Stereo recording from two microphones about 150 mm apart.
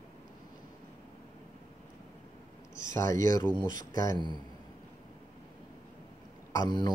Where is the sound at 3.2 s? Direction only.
25° left (ahead or behind).